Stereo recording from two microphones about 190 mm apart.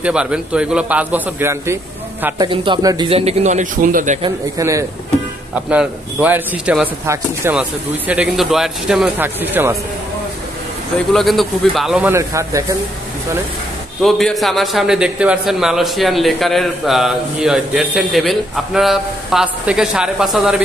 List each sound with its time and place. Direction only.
0.0 s speech: 5° right (ahead or behind); by 3.1 s 20° right (ahead or behind)
3.1 s a man's voice: 30° right (ahead or behind)
4.6 s a man's voice: 15° right (ahead or behind)
11.1 s a man's voice: centre (ahead or behind)
12.1 s speech: 15° right (ahead or behind)
14.0 s a man's voice: centre (ahead or behind)